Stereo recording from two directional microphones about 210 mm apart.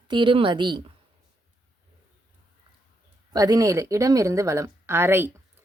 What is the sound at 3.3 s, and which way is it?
A woman's voice, 15° right (ahead or behind).